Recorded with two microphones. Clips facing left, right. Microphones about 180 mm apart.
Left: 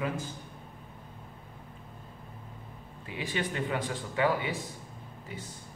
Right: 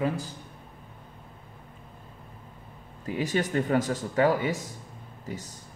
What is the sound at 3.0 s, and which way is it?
Speech, 40° right (ahead or behind).